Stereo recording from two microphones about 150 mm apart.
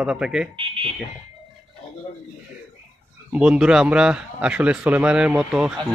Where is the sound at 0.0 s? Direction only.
5° right (ahead or behind).